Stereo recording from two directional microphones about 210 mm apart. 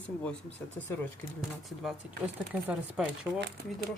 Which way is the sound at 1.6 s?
Centre (ahead or behind).